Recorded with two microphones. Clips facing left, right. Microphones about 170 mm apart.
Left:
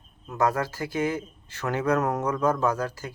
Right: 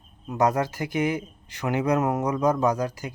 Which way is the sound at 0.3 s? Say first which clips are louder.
Right 2 dB; 20° right (ahead or behind).